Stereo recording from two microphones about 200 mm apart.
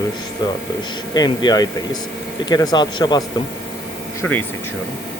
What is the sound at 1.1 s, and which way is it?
Speech, 20° left (ahead or behind).